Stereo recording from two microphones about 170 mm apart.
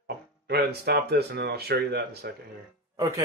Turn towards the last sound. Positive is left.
turn(degrees=-20)  # may be behind; listen again after turning